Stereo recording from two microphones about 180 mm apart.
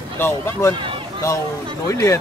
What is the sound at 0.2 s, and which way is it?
Speech, 15° left (ahead or behind).